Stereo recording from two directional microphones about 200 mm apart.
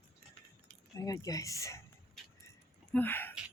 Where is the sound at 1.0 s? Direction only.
15° left (ahead or behind).